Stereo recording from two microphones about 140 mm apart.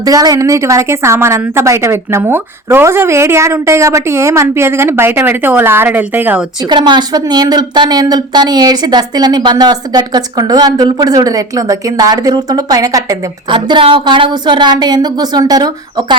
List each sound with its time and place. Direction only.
0.0 s speech: 25° right (ahead or behind)
6.7 s speech: 30° right (ahead or behind)
13.5 s a woman's voice: 35° right (ahead or behind)